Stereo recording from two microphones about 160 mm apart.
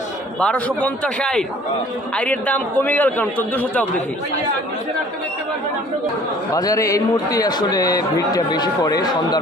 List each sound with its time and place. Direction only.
0.3 s a man's voice: 5° left (ahead or behind)
6.5 s a man's voice: 20° left (ahead or behind)